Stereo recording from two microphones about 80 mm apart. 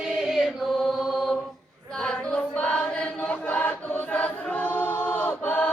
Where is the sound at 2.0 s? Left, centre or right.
Centre.